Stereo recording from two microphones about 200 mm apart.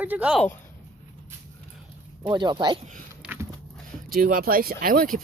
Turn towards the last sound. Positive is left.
turn(degrees=-45)  # may be behind; listen again after turning